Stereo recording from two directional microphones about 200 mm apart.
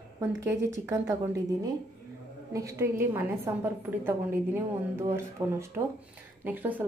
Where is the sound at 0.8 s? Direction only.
15° right (ahead or behind).